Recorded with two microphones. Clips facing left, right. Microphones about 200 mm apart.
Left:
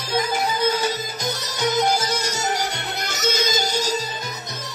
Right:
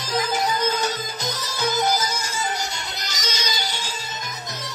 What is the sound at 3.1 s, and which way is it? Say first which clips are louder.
Music: left 8 dB; 55° left (ahead or behind).